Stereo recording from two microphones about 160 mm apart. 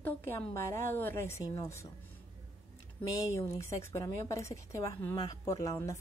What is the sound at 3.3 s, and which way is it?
A woman's voice, 15° left (ahead or behind).